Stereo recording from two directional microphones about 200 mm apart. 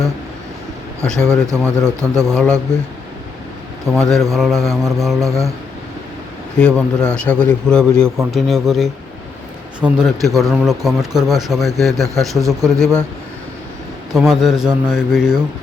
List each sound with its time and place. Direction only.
1.0 s a man's voice: 5° left (ahead or behind)
1.5 s a man's voice: 15° right (ahead or behind)
2.2 s a man's voice: centre (ahead or behind)
3.9 s a man's voice: 15° right (ahead or behind)
4.4 s a man's voice: centre (ahead or behind)
4.6 s a man's voice: 15° right (ahead or behind)
6.6 s a man's voice: 5° left (ahead or behind)
14.2 s a man's voice: centre (ahead or behind)